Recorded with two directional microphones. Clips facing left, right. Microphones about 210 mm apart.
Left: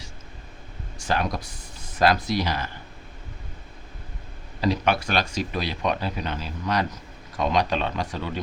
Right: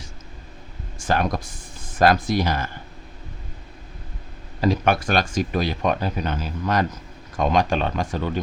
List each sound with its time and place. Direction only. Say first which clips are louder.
0.9 s speech: right 3 dB; 50° right (ahead or behind)
4.6 s speech: right 3 dB; 45° right (ahead or behind)